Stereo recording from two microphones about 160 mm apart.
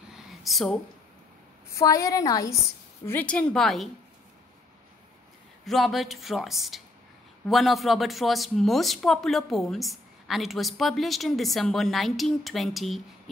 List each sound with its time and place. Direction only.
0.1 s a sound: centre (ahead or behind)
1.7 s a woman's voice: 20° left (ahead or behind)
3.1 s speech: 10° left (ahead or behind)
5.7 s speech: centre (ahead or behind)